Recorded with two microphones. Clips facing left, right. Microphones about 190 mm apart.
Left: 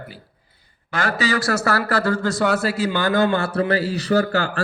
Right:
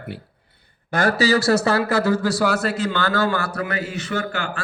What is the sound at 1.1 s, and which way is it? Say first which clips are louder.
Speech: right 4 dB; 35° right (ahead or behind).